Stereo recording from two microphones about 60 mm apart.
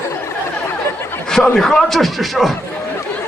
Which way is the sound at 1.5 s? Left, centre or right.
Centre.